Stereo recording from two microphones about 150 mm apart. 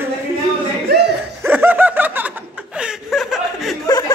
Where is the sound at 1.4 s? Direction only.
15° right (ahead or behind).